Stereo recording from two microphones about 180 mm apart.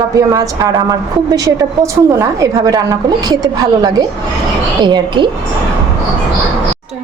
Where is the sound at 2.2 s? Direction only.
20° right (ahead or behind).